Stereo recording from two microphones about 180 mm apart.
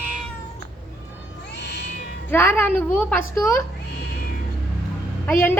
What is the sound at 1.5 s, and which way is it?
Cat, 70° left (ahead or behind).